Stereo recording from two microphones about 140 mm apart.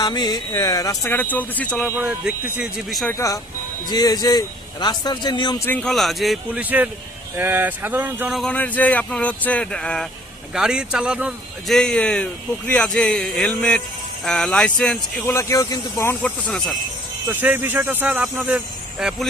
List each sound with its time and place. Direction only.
0.0 s speech: 30° left (ahead or behind); by 1.8 s 10° left (ahead or behind)
2.0 s speech: 5° right (ahead or behind)
3.1 s speech: 20° left (ahead or behind)
5.6 s speech: 10° left (ahead or behind)
5.9 s speech: centre (ahead or behind)
6.5 s speech: 10° right (ahead or behind)
8.4 s speech: 10° left (ahead or behind)
10.5 s speech: 5° right (ahead or behind)
11.8 s speech: 5° left (ahead or behind)
15.3 s speech: 20° left (ahead or behind)
16.2 s speech: 5° left (ahead or behind)
17.2 s speech: 15° right (ahead or behind)